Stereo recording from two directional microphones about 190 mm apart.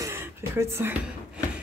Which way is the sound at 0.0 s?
15° right (ahead or behind).